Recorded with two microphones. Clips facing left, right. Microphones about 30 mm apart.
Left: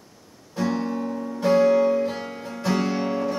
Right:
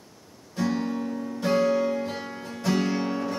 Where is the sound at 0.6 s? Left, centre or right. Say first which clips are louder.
Left 2 dB; centre.